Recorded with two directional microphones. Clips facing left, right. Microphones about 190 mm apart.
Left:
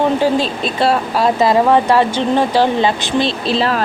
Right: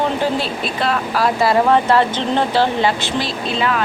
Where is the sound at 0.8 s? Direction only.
30° left (ahead or behind).